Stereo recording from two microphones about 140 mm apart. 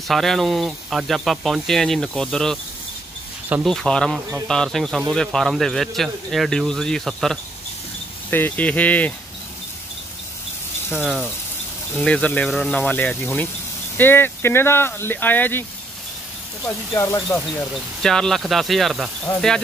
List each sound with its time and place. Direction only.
0.1 s speech: centre (ahead or behind)
3.6 s speech: 5° left (ahead or behind)
8.3 s speech: 15° left (ahead or behind)
10.9 s speech: 5° right (ahead or behind)
12.0 s speech: 10° left (ahead or behind)
16.6 s speech: 20° left (ahead or behind)
18.0 s speech: 5° left (ahead or behind)